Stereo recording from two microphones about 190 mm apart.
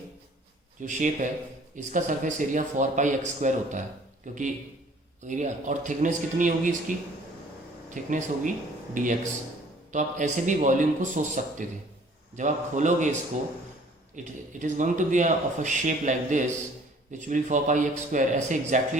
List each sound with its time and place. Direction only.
0.8 s speech: 40° right (ahead or behind)
7.9 s speech: 40° right (ahead or behind)
14.2 s speech: 40° right (ahead or behind)